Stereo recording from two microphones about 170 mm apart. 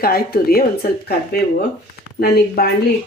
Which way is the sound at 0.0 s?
65° left (ahead or behind).